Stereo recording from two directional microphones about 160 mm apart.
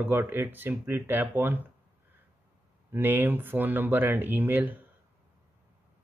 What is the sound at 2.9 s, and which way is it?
Speech, 10° right (ahead or behind).